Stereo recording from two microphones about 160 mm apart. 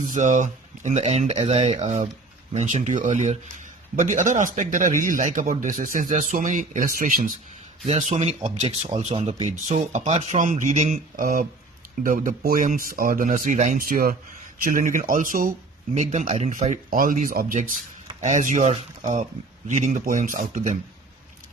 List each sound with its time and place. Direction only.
0.1 s a man's voice: 50° right (ahead or behind)
7.9 s speech: 40° right (ahead or behind)
10.3 s a man's voice: 50° right (ahead or behind)
16.0 s a man's voice: 45° right (ahead or behind)